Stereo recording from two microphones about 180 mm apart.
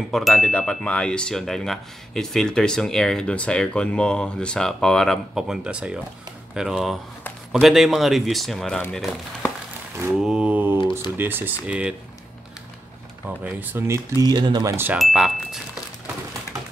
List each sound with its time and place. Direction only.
0.1 s speech: centre (ahead or behind)
13.4 s speech: 10° right (ahead or behind)
15.0 s speech: centre (ahead or behind)